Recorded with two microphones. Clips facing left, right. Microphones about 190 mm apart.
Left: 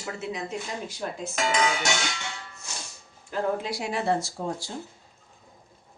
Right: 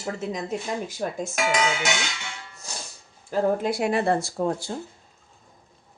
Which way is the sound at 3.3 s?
50° right (ahead or behind).